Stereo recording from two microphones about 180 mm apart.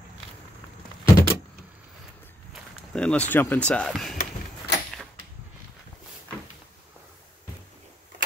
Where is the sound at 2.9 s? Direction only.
5° left (ahead or behind).